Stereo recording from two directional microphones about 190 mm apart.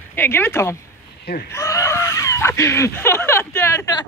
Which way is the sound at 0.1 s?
10° left (ahead or behind).